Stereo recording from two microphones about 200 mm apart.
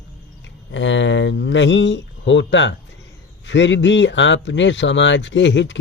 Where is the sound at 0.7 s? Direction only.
65° left (ahead or behind).